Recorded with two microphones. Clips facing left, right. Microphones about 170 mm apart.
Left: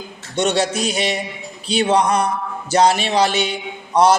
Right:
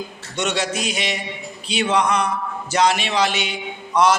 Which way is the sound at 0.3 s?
30° left (ahead or behind).